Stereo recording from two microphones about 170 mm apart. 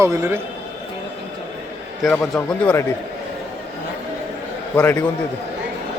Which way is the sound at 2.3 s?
15° left (ahead or behind).